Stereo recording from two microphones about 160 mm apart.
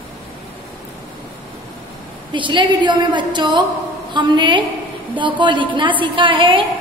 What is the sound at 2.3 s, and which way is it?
A woman's voice, 30° right (ahead or behind).